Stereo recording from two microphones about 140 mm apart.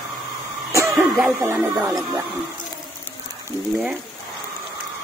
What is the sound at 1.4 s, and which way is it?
Speech, 20° right (ahead or behind).